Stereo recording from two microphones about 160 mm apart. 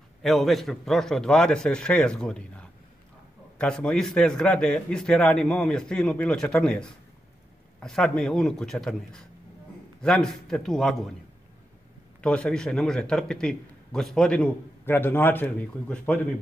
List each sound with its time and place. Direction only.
0.2 s a man's voice: centre (ahead or behind)
12.2 s a man's voice: 5° left (ahead or behind)